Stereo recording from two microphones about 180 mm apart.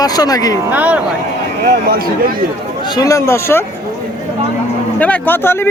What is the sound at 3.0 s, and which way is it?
Speech, 15° left (ahead or behind).